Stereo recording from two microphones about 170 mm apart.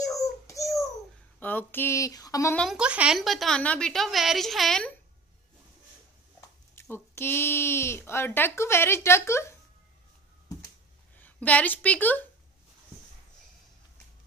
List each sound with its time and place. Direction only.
0.5 s a sound: 20° left (ahead or behind)
1.4 s speech: 10° left (ahead or behind)
2.5 s a woman's voice: centre (ahead or behind)
6.7 s speech: 15° left (ahead or behind)
11.1 s a woman's voice: 10° left (ahead or behind)